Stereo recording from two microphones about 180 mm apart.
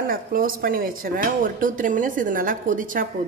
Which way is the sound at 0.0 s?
50° right (ahead or behind).